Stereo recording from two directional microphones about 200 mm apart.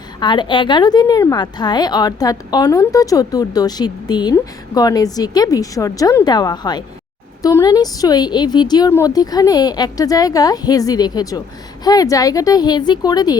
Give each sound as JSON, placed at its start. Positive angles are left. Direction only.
{"t": 0.2, "sound": "a woman's voice", "side_deg": 20}